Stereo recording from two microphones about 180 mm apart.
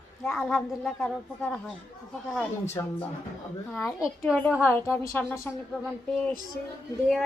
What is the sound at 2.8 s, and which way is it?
Speech, 20° left (ahead or behind).